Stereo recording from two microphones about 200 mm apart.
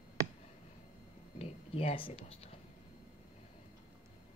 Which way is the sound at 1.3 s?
30° left (ahead or behind).